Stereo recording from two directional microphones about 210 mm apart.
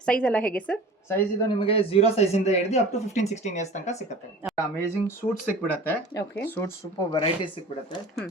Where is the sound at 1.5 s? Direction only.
25° left (ahead or behind).